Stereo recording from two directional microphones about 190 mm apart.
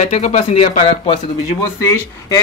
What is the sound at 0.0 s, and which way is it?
Speech, 40° left (ahead or behind).